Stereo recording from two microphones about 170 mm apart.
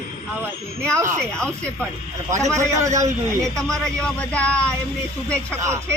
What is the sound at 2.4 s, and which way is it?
Speech, 20° right (ahead or behind).